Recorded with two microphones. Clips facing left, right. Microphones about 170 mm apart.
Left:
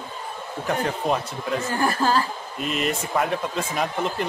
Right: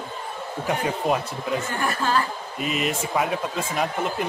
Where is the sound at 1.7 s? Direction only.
30° left (ahead or behind).